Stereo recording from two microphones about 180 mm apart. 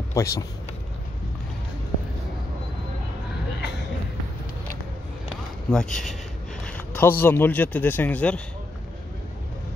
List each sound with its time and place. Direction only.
0.1 s speech: 15° left (ahead or behind)
5.7 s speech: 5° left (ahead or behind)